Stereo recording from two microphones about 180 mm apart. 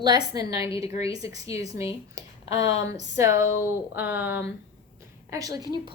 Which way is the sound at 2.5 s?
40° left (ahead or behind).